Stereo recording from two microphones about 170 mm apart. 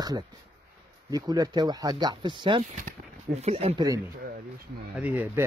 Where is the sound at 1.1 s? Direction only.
20° right (ahead or behind).